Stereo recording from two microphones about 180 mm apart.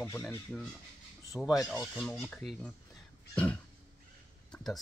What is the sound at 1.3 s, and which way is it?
Speech, centre (ahead or behind).